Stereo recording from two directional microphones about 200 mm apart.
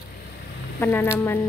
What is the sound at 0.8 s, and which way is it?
Speech, 10° left (ahead or behind).